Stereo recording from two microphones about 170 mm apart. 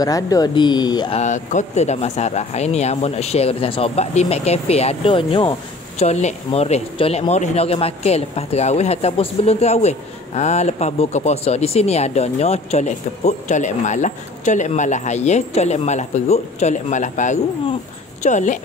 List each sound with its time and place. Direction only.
0.0 s speech: 20° left (ahead or behind)
1.1 s speech: 45° left (ahead or behind)